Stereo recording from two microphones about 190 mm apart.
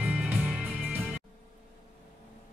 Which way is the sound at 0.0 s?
10° right (ahead or behind).